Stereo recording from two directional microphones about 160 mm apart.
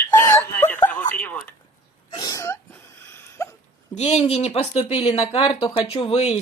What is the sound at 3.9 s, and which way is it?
Speech, 45° left (ahead or behind).